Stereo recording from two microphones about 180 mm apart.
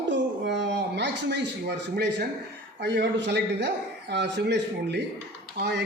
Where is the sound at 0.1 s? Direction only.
75° right (ahead or behind).